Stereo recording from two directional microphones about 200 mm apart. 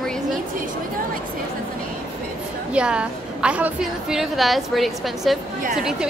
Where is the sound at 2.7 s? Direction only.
5° right (ahead or behind).